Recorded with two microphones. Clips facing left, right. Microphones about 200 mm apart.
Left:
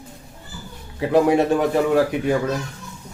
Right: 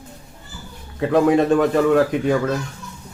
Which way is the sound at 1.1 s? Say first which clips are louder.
Right 1 dB; 10° left (ahead or behind).